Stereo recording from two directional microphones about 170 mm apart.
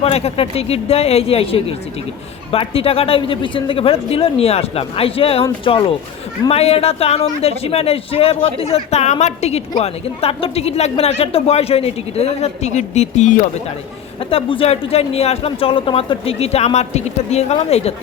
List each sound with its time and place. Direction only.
0.0 s a man's voice: 35° left (ahead or behind)